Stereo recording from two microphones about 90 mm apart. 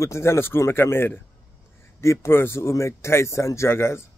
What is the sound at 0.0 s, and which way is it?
Speech, 30° left (ahead or behind).